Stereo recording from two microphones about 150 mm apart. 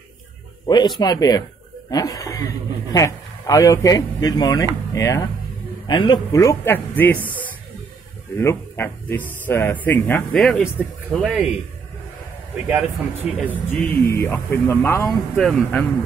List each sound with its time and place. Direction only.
0.7 s speech: 30° left (ahead or behind); by 7.3 s 10° left (ahead or behind)
8.4 s speech: 15° left (ahead or behind)
10.3 s speech: 5° left (ahead or behind)
12.6 s speech: 10° right (ahead or behind)
13.5 s speech: 10° left (ahead or behind)